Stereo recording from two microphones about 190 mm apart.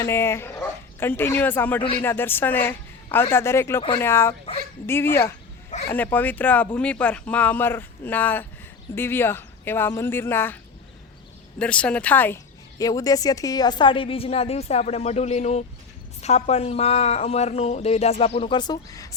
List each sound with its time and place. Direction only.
0.0 s speech: 15° left (ahead or behind)
11.6 s a woman's voice: 5° left (ahead or behind)